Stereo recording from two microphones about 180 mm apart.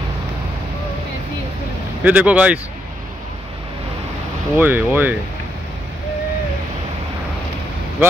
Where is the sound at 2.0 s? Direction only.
10° right (ahead or behind).